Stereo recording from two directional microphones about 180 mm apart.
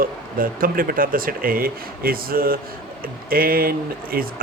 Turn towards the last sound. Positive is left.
turn(degrees=-55)  # may be behind; listen again after turning